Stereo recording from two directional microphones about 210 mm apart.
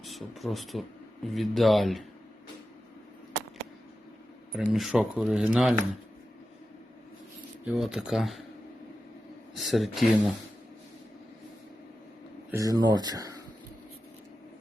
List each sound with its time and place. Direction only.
0.0 s speech: centre (ahead or behind)
4.7 s speech: centre (ahead or behind)
7.6 s speech: centre (ahead or behind)
9.6 s speech: centre (ahead or behind)
12.5 s speech: 15° right (ahead or behind)